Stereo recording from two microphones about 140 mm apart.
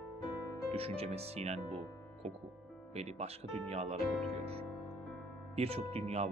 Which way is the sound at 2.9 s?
50° right (ahead or behind).